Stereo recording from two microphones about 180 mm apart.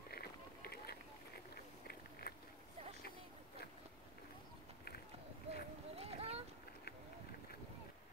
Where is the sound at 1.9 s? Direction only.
60° left (ahead or behind).